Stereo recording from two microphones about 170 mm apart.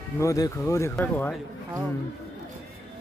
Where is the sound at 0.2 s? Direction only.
20° left (ahead or behind).